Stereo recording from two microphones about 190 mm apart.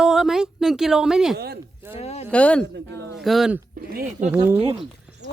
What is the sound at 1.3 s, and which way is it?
Speech, 55° right (ahead or behind).